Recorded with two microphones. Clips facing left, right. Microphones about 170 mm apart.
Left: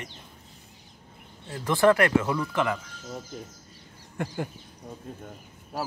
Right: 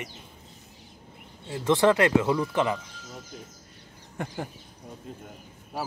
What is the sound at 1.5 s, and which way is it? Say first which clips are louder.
Speech: even; 20° right (ahead or behind).